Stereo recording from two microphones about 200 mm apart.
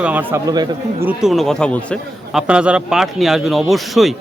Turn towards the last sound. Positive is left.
turn(degrees=0)  # may be behind; listen again after turning